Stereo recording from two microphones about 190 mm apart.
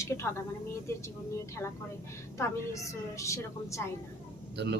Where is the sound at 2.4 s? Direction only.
15° left (ahead or behind).